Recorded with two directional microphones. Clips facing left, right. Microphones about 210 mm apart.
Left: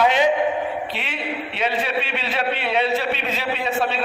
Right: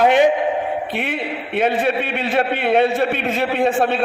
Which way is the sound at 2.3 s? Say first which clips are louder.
Right 7 dB; 55° right (ahead or behind).